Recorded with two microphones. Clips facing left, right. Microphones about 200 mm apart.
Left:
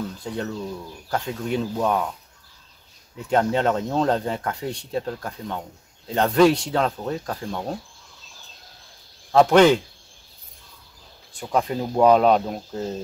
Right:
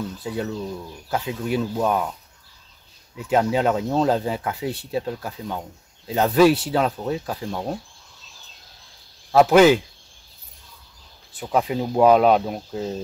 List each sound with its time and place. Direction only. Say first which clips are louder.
0.2 s speech: right 2 dB; 5° right (ahead or behind)
3.3 s speech: right 1 dB; 5° right (ahead or behind)
9.3 s speech: right 1 dB; 5° right (ahead or behind)
11.3 s speech: right 1 dB; 5° right (ahead or behind)